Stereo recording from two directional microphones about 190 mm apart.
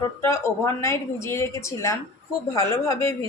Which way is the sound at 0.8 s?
15° left (ahead or behind).